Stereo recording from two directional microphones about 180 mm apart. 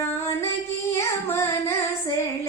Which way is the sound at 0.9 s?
15° left (ahead or behind).